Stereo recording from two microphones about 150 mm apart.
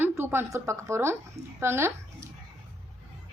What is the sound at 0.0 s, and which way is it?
A woman's voice, 15° right (ahead or behind).